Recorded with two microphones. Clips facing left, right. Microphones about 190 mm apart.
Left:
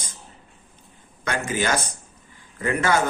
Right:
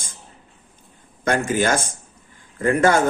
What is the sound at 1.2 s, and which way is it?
A man's voice, 50° right (ahead or behind).